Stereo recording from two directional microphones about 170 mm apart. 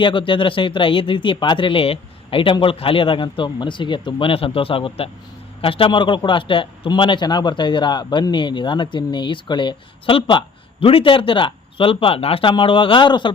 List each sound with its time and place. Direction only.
0.0 s a man's voice: 30° left (ahead or behind)